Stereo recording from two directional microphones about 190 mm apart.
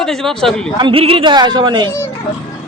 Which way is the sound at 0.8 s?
25° right (ahead or behind).